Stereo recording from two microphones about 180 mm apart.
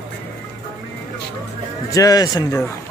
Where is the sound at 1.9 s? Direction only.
20° left (ahead or behind).